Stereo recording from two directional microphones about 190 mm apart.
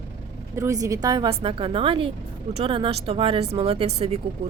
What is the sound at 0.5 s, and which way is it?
A woman's voice, 15° right (ahead or behind).